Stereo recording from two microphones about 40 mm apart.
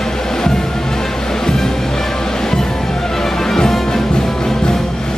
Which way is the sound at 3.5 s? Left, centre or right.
Centre.